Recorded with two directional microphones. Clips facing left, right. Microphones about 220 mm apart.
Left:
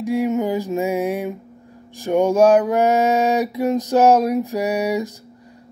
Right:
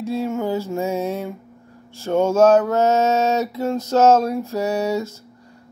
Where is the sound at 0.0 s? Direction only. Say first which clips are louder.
Left 3 dB; 15° left (ahead or behind).